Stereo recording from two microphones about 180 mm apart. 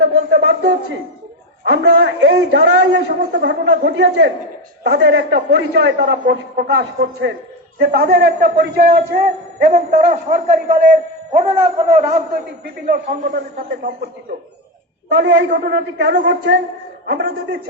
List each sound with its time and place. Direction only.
0.1 s a man's voice: 70° right (ahead or behind)
7.8 s a man's voice: 60° right (ahead or behind); by 10.8 s 40° right (ahead or behind)
11.9 s a man's voice: 40° right (ahead or behind)
12.9 s a man's voice: 55° right (ahead or behind)
15.2 s a man's voice: 70° right (ahead or behind)
17.1 s a man's voice: 70° right (ahead or behind)